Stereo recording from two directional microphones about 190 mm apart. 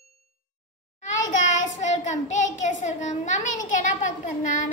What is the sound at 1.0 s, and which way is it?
Child singing, 40° left (ahead or behind).